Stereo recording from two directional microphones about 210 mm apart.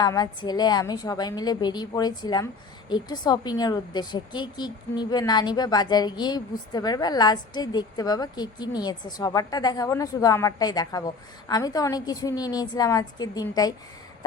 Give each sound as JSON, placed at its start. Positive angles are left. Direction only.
{"t": 0.0, "sound": "a woman's voice", "side_deg": 20}